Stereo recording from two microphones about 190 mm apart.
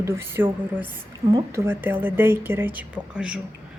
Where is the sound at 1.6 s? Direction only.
10° right (ahead or behind).